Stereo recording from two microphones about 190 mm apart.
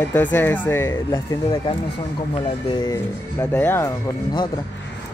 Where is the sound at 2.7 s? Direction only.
20° left (ahead or behind).